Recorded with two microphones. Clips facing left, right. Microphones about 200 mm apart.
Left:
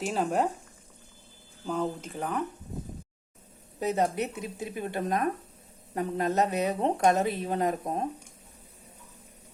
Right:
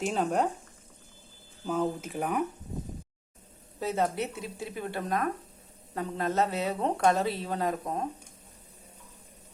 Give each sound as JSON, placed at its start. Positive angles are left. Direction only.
{"t": 0.0, "sound": "speech", "side_deg": 0}
{"t": 1.6, "sound": "speech", "side_deg": -5}
{"t": 3.8, "sound": "speech", "side_deg": 20}